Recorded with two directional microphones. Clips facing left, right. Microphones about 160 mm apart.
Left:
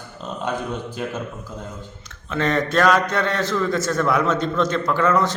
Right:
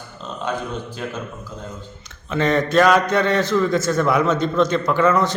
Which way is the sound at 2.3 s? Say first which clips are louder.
Right 3 dB; centre (ahead or behind).